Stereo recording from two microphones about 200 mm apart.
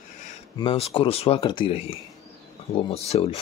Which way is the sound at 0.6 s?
25° left (ahead or behind).